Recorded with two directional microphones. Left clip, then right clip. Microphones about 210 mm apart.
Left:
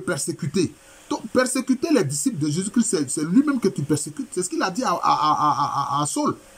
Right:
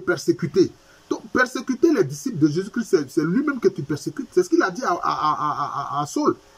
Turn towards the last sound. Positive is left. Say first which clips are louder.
# even
turn(degrees=5)  # may be behind; listen again after turning